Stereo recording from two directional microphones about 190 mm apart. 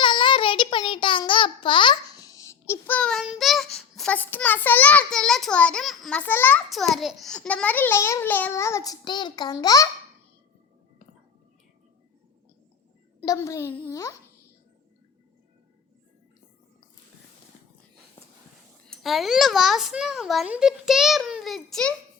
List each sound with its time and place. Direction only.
0.0 s a sound: 25° left (ahead or behind)
13.2 s a child's voice: 15° left (ahead or behind)
18.9 s a child's voice: centre (ahead or behind)